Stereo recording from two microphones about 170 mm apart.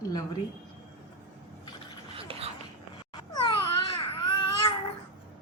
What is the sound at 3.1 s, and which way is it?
Babbling, 30° left (ahead or behind).